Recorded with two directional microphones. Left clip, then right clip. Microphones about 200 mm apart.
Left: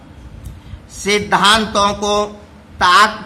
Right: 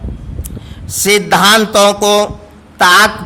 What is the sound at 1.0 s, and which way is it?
A man's voice, 55° right (ahead or behind).